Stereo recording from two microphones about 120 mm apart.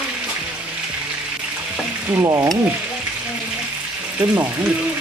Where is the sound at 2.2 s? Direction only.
30° right (ahead or behind).